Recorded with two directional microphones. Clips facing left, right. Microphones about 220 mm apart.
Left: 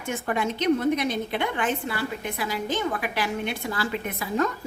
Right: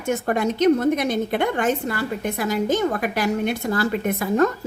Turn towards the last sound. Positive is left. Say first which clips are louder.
# right 6 dB
turn(degrees=-50)  # may be behind; listen again after turning